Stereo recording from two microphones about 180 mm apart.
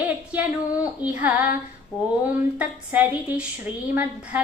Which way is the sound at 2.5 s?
10° right (ahead or behind).